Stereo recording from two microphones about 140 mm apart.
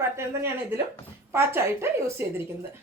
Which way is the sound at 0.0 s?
15° right (ahead or behind).